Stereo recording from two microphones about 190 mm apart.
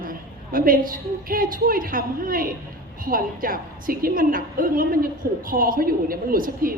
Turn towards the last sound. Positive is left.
turn(degrees=-50)  # may be behind; listen again after turning